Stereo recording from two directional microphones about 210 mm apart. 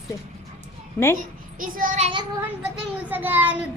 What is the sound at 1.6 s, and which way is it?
Child singing, 40° right (ahead or behind).